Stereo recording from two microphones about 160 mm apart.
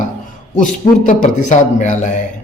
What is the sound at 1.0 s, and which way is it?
Speech, 50° left (ahead or behind).